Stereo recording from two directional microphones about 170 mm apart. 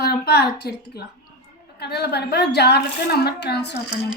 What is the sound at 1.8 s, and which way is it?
A woman's voice, 75° left (ahead or behind).